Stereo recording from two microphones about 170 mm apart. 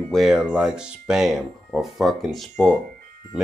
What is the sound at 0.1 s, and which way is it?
Speech, centre (ahead or behind).